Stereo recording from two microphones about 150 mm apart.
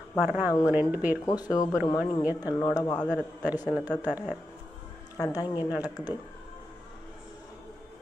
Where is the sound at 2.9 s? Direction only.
5° left (ahead or behind).